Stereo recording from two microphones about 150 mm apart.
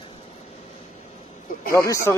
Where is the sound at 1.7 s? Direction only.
20° left (ahead or behind).